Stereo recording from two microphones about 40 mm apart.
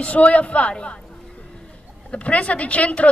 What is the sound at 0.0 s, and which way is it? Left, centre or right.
Speech, left.